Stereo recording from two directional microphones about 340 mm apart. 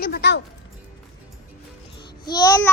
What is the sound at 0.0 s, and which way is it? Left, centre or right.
Music, left.